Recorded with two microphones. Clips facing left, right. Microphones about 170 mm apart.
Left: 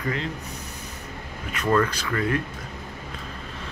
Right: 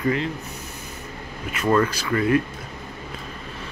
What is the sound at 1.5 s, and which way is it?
Speech, 10° right (ahead or behind).